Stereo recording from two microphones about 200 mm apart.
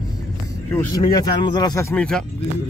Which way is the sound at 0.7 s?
20° left (ahead or behind).